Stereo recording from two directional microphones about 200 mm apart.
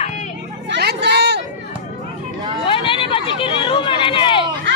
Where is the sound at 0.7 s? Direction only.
55° right (ahead or behind).